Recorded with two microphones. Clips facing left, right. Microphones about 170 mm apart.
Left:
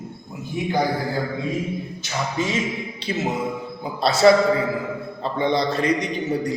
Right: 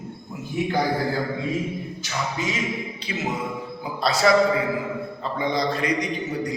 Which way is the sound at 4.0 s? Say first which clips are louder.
Left 5 dB; 25° left (ahead or behind).